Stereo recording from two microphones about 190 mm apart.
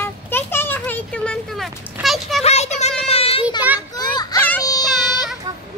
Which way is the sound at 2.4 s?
35° left (ahead or behind).